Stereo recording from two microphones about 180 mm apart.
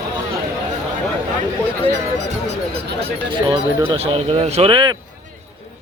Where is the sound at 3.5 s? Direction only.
30° right (ahead or behind).